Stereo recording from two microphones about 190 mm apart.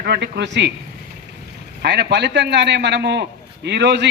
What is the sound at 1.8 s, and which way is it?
A man's voice, 65° right (ahead or behind).